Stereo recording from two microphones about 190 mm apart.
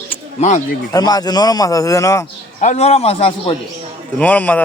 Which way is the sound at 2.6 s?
35° left (ahead or behind).